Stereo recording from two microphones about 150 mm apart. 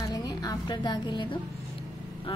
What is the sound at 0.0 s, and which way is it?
Music, 25° left (ahead or behind).